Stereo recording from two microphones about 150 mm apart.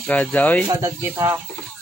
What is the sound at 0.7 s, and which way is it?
Speech, 20° right (ahead or behind).